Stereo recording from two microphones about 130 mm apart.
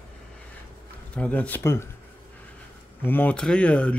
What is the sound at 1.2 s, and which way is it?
Speech, 10° left (ahead or behind).